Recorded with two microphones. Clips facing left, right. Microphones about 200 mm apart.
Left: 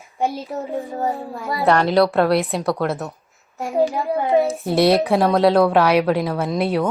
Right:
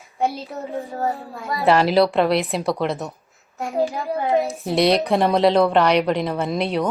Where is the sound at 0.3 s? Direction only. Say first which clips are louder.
Left 2 dB; 15° left (ahead or behind).